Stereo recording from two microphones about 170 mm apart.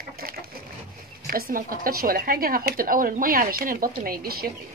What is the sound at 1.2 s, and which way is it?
Speech, 55° right (ahead or behind).